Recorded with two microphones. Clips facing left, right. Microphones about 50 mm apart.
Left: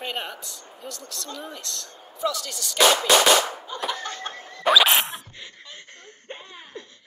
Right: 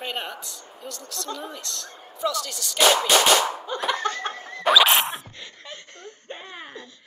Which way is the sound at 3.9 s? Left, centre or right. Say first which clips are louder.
Right 5 dB; right.